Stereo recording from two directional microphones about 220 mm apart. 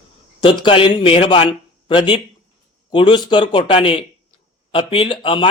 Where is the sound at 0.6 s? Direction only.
25° left (ahead or behind).